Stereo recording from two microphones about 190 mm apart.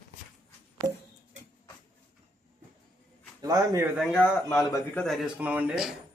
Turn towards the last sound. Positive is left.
turn(degrees=-5)  # may be behind; listen again after turning